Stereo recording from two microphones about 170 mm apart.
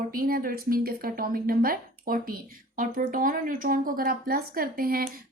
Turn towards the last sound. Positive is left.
turn(degrees=-60)  # may be behind; listen again after turning